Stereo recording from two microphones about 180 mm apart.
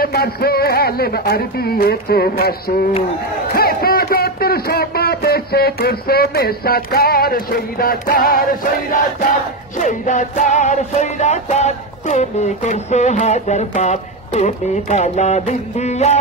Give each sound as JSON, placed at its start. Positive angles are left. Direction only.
{"t": 0.0, "sound": "speech", "side_deg": 60}
{"t": 9.8, "sound": "music", "side_deg": 45}